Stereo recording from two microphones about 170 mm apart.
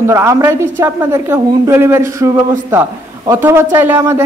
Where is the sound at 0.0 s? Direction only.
15° right (ahead or behind).